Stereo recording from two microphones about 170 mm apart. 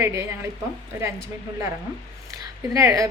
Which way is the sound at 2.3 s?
20° right (ahead or behind).